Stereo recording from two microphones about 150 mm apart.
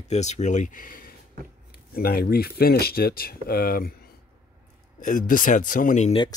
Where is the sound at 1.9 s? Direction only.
90° left.